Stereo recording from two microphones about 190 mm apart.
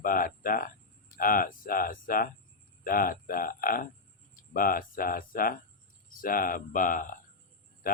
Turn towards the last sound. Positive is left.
turn(degrees=50)  # may be behind; listen again after turning